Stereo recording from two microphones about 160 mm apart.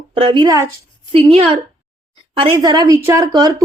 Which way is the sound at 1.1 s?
35° right (ahead or behind).